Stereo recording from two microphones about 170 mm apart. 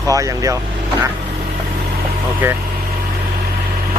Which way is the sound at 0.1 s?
20° right (ahead or behind).